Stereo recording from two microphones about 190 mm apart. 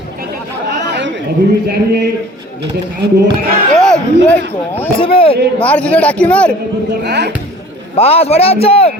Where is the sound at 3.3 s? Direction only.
50° right (ahead or behind).